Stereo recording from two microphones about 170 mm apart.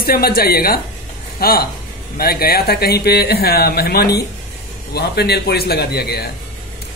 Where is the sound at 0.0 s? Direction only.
60° left (ahead or behind).